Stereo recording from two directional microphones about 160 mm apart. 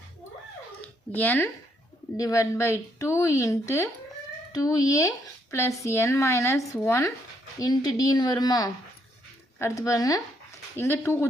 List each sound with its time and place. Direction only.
1.1 s speech: 10° left (ahead or behind)